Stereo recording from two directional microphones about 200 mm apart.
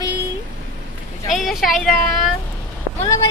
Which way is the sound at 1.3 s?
Centre (ahead or behind).